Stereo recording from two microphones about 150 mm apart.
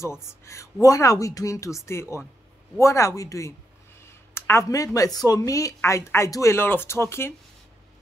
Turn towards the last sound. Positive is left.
turn(degrees=15)  # may be behind; listen again after turning